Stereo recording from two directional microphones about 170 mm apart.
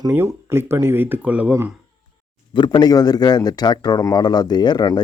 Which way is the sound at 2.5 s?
25° left (ahead or behind).